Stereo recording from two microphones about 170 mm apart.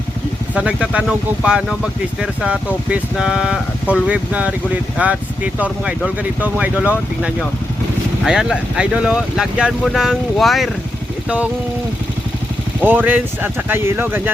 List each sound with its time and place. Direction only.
0.5 s speech: 5° right (ahead or behind)
12.8 s speech: 10° right (ahead or behind)